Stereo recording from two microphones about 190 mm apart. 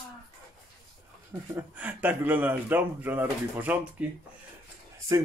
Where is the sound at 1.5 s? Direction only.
10° right (ahead or behind).